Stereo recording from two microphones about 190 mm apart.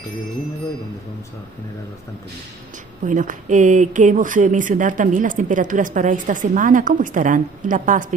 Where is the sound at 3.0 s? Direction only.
40° right (ahead or behind).